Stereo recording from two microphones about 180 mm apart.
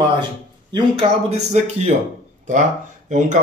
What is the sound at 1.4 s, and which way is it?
Speech, 40° right (ahead or behind).